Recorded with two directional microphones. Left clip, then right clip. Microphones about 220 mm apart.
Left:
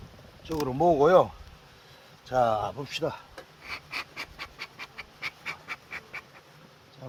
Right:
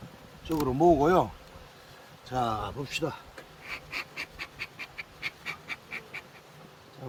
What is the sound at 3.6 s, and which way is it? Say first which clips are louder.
Dog: left 1 dB; 20° left (ahead or behind).